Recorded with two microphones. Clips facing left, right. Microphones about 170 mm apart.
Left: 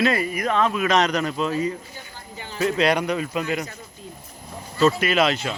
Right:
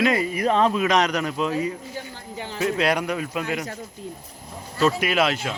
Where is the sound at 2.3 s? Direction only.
70° right (ahead or behind).